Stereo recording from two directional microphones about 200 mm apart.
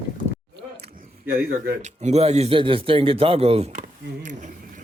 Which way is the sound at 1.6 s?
35° right (ahead or behind).